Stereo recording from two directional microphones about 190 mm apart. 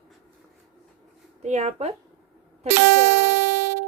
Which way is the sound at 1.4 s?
35° right (ahead or behind).